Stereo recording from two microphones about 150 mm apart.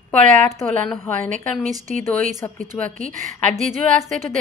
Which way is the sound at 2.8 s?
55° right (ahead or behind).